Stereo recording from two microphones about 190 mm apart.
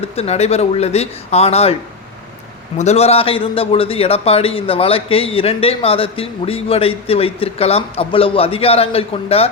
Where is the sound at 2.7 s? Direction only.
35° left (ahead or behind).